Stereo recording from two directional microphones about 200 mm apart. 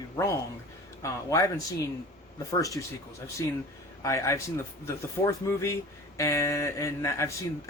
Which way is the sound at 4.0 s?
15° left (ahead or behind).